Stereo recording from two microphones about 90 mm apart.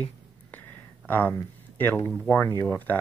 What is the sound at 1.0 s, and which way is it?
Speech, 20° left (ahead or behind).